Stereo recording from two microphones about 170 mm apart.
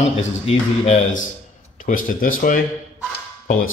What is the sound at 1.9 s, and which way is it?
Speech, 55° left (ahead or behind).